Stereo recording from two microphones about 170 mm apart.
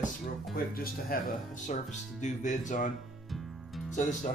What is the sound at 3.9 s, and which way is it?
Speech, 45° left (ahead or behind).